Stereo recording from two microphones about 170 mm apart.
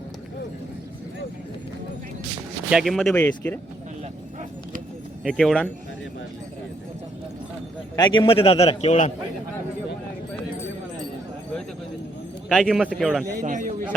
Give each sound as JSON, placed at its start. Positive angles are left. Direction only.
{"t": 2.6, "sound": "speech", "side_deg": 0}
{"t": 5.2, "sound": "speech", "side_deg": 0}
{"t": 7.9, "sound": "a man's voice", "side_deg": 25}
{"t": 12.5, "sound": "speech", "side_deg": 0}
{"t": 13.3, "sound": "speech", "side_deg": -50}